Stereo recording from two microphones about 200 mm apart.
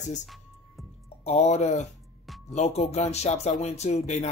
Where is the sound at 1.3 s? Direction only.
35° left (ahead or behind).